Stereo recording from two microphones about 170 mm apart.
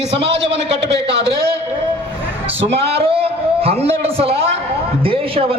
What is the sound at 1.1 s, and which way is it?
Speech, 85° right.